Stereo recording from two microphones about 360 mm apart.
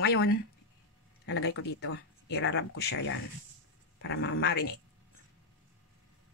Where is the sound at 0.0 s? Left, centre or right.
Left.